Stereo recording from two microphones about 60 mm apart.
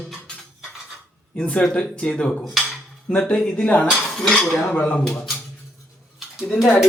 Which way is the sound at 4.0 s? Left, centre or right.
Centre.